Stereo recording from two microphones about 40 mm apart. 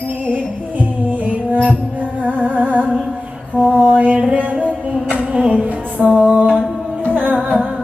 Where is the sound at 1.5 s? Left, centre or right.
Right.